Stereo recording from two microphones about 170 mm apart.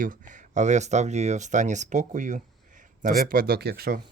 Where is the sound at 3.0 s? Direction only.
60° right (ahead or behind).